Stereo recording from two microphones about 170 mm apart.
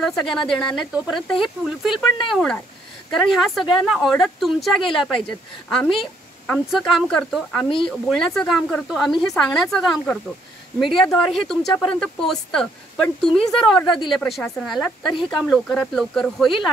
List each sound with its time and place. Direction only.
0.0 s speech: centre (ahead or behind)